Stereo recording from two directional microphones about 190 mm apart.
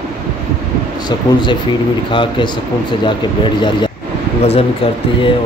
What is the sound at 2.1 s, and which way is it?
Speech, 25° left (ahead or behind).